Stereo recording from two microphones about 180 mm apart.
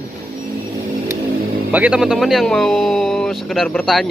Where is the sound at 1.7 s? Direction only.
5° right (ahead or behind).